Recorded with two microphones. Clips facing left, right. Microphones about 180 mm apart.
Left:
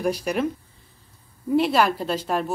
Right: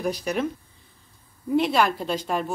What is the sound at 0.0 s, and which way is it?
Speech, 5° left (ahead or behind).